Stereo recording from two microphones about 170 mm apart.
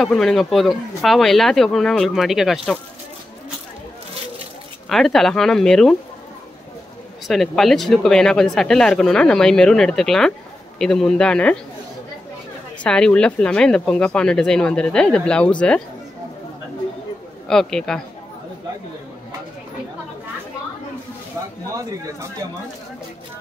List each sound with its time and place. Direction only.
0.0 s speech: centre (ahead or behind)
4.8 s speech: centre (ahead or behind)
7.2 s speech: centre (ahead or behind)
12.8 s speech: 5° left (ahead or behind)
17.5 s speech: 5° left (ahead or behind)
21.7 s speech: 20° right (ahead or behind)